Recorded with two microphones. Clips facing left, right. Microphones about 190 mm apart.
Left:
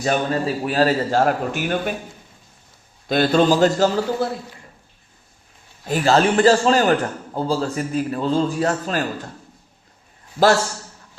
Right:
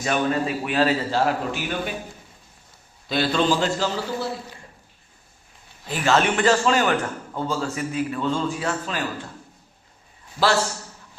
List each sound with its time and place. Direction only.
0.0 s a man's voice: 35° left (ahead or behind); by 1.9 s 50° left (ahead or behind)
3.1 s a man's voice: 45° left (ahead or behind)
5.9 s a man's voice: 35° left (ahead or behind)